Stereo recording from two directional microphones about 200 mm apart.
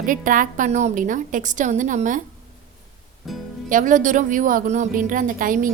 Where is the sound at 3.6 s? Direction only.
40° right (ahead or behind).